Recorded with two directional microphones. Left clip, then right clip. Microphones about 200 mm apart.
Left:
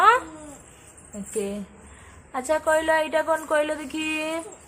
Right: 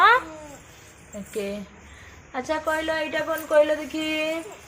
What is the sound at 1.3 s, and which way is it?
A woman's voice, 10° left (ahead or behind).